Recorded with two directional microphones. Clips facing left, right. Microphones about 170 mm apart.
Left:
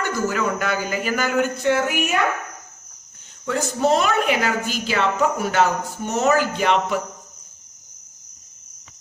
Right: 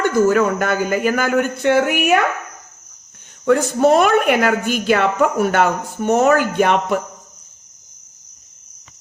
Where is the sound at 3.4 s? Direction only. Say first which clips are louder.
Right 6 dB; 55° right (ahead or behind).